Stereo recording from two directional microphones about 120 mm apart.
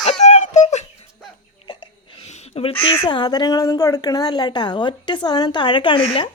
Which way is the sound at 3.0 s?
40° left (ahead or behind).